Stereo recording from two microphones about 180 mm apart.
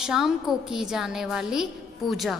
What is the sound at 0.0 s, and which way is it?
A woman's voice, 5° right (ahead or behind).